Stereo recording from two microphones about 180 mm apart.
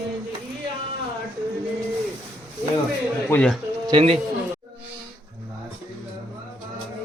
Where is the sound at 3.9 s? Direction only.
30° right (ahead or behind).